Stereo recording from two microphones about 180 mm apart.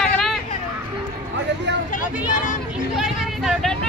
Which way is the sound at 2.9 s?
Centre (ahead or behind).